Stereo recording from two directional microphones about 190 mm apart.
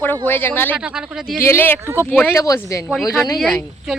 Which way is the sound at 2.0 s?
10° left (ahead or behind).